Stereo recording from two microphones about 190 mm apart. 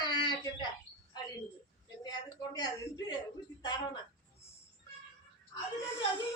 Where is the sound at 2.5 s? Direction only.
20° left (ahead or behind).